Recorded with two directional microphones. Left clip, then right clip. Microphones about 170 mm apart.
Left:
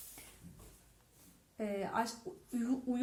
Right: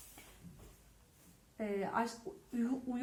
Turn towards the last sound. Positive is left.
turn(degrees=35)  # may be behind; listen again after turning